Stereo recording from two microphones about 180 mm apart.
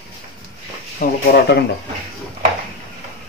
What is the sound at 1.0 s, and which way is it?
Speech, 50° left (ahead or behind).